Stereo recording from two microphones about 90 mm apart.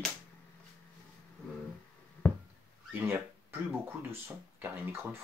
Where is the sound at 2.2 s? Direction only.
20° left (ahead or behind).